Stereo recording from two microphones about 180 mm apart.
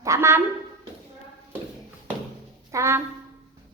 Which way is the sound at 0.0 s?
15° right (ahead or behind).